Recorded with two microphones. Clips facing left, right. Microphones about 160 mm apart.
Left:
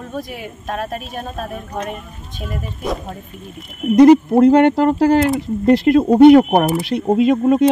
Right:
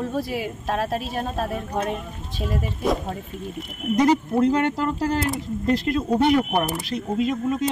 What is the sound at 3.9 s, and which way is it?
Speech, 65° left (ahead or behind).